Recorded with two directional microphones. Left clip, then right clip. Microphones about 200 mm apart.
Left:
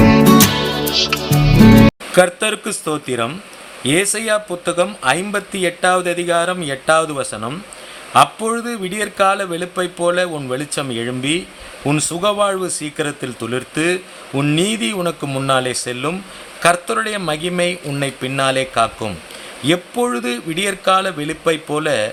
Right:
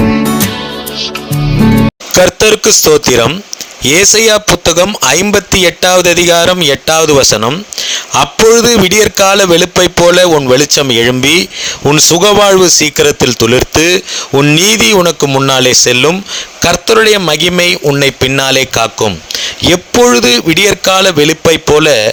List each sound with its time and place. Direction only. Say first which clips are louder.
1.3 s music: right 1 dB; centre (ahead or behind)
2.4 s speech: right 14 dB; 45° right (ahead or behind)